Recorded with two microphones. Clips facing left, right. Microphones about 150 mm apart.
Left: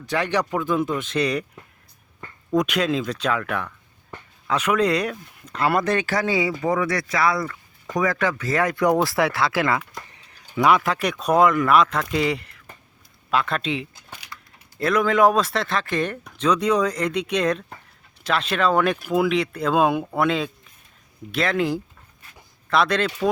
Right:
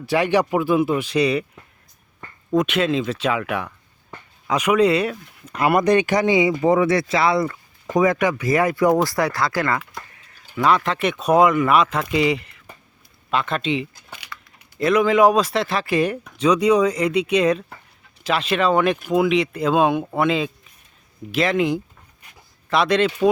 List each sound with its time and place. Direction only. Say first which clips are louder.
0.0 s speech: right 5 dB; 10° right (ahead or behind)
2.5 s speech: right 2 dB; centre (ahead or behind)